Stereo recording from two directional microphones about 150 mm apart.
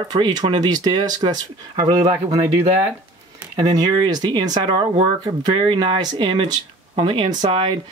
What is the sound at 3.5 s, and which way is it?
Speech, 25° right (ahead or behind).